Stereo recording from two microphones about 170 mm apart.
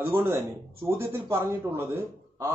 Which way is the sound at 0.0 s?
15° right (ahead or behind).